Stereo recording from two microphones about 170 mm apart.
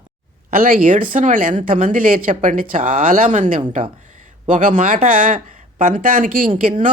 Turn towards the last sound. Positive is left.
turn(degrees=-50)  # may be behind; listen again after turning